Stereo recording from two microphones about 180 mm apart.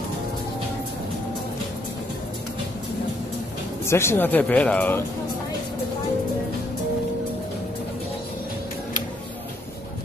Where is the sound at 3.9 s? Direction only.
15° left (ahead or behind).